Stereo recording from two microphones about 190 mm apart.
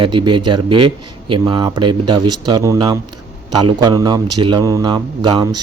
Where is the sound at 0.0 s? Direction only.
25° right (ahead or behind).